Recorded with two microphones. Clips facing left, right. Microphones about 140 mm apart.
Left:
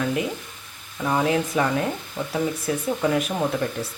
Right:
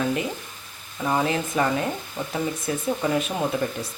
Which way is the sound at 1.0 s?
Centre (ahead or behind).